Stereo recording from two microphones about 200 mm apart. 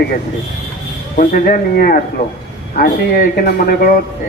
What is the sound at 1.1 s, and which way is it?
Speech, 40° left (ahead or behind).